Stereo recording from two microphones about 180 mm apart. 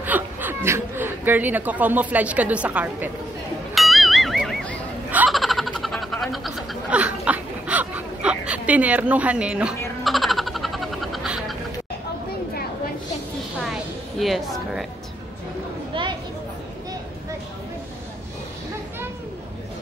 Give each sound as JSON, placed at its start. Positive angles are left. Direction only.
{"t": 0.0, "sound": "speech", "side_deg": -10}
{"t": 3.7, "sound": "a sound", "side_deg": 0}
{"t": 13.7, "sound": "music", "side_deg": 0}
{"t": 15.9, "sound": "chatter", "side_deg": -25}